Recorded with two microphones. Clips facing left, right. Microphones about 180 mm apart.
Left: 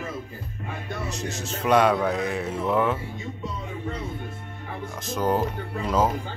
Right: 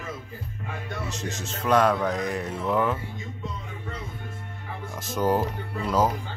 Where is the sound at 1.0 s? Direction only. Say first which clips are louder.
Left 2 dB; 35° left (ahead or behind).